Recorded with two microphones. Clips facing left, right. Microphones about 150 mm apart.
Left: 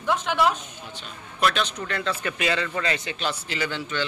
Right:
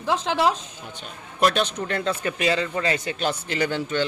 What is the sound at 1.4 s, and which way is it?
A man's voice, 45° right (ahead or behind).